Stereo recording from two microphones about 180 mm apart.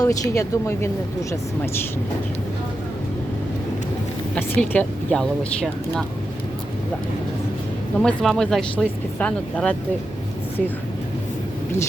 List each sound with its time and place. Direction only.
0.0 s speech: 20° left (ahead or behind)
4.4 s a woman's voice: 10° left (ahead or behind)
7.9 s speech: centre (ahead or behind)